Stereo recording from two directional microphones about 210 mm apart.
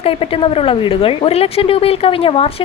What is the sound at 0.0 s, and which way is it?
Speech, 25° left (ahead or behind).